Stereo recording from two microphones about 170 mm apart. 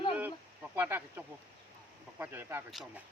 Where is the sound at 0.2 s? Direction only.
10° right (ahead or behind).